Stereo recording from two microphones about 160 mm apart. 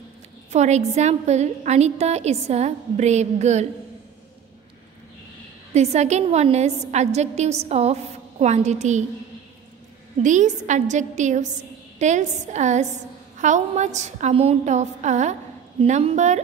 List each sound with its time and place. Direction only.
0.5 s a woman's voice: 45° right (ahead or behind)
5.7 s a woman's voice: 45° right (ahead or behind)
10.1 s a woman's voice: 50° right (ahead or behind)